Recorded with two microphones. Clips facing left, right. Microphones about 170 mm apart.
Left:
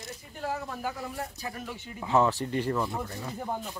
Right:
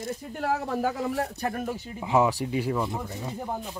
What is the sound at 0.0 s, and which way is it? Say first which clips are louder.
Speech: right 6 dB; 55° right (ahead or behind).